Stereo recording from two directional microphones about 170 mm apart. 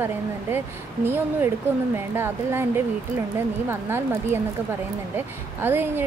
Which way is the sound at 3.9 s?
15° right (ahead or behind).